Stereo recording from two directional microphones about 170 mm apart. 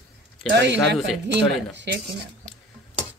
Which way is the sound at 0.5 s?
90° right.